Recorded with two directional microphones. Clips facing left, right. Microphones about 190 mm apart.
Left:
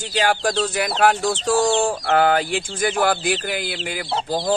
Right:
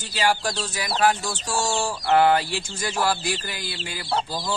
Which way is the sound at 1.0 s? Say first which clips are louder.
Left 3 dB; 60° left (ahead or behind).